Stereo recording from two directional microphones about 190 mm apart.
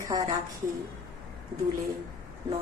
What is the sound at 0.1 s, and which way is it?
Speech, 20° right (ahead or behind).